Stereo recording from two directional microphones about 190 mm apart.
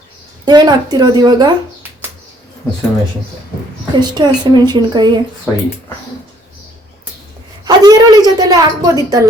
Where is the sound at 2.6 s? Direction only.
10° left (ahead or behind).